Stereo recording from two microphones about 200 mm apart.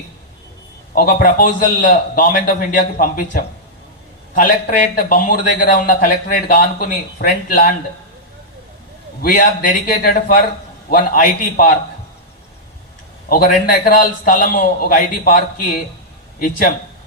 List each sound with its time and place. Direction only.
0.9 s a man's voice: 45° left (ahead or behind)
9.2 s a man's voice: 45° left (ahead or behind)
13.3 s a man's voice: 45° left (ahead or behind)